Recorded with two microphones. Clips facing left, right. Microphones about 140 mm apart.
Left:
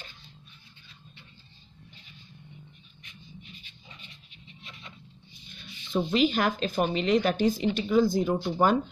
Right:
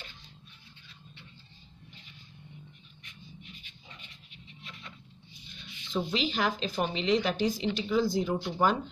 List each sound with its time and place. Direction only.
5.9 s speech: 50° left (ahead or behind)